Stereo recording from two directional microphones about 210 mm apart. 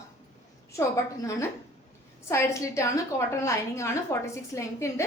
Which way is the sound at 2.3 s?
15° left (ahead or behind).